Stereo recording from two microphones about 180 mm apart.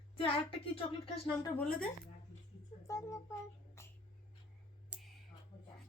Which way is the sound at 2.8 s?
20° left (ahead or behind).